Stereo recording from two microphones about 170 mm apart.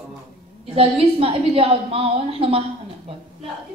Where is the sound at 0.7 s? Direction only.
35° right (ahead or behind).